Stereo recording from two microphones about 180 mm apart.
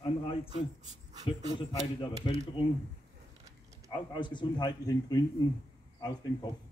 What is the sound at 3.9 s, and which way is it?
Speech, 25° left (ahead or behind).